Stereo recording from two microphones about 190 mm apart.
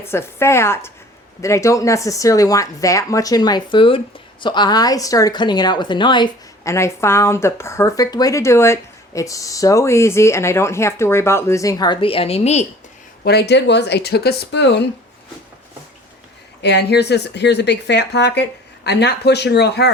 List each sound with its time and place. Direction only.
0.0 s speech: 15° left (ahead or behind); by 12.6 s 35° left (ahead or behind)
13.2 s speech: 60° left (ahead or behind)
16.6 s speech: 60° left (ahead or behind)